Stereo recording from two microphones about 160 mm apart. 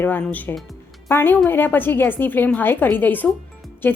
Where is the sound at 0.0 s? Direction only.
10° left (ahead or behind).